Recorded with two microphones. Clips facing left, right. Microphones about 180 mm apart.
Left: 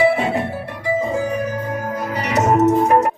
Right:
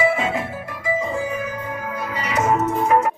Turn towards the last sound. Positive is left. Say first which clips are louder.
# left 5 dB
turn(degrees=40)  # may be behind; listen again after turning